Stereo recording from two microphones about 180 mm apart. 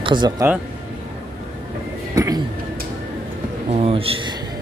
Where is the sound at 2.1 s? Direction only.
20° right (ahead or behind).